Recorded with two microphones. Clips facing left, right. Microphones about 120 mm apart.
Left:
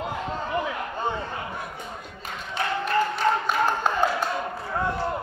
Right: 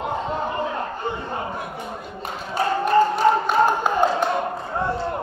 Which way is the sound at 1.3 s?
40° right (ahead or behind).